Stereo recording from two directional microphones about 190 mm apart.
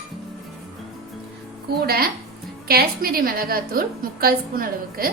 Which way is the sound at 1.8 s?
55° right (ahead or behind).